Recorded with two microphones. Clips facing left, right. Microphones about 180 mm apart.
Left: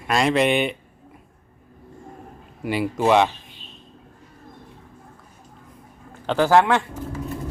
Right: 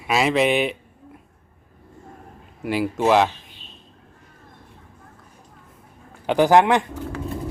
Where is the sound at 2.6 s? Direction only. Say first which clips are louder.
Even; centre (ahead or behind).